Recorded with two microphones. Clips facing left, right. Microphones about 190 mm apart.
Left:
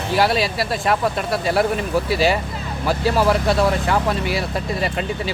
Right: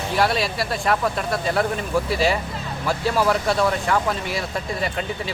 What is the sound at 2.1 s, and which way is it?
Speech, centre (ahead or behind).